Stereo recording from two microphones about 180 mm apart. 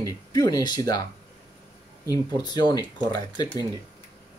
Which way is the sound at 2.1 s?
20° left (ahead or behind).